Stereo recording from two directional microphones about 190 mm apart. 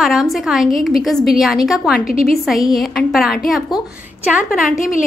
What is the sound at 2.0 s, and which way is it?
Speech, 50° left (ahead or behind).